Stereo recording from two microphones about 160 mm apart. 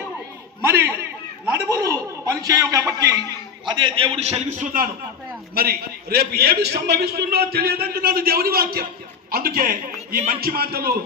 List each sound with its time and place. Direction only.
0.6 s a sound: 15° right (ahead or behind)
3.7 s a man's voice: 30° right (ahead or behind); by 4.9 s 55° right (ahead or behind)
5.5 s a man's voice: 80° right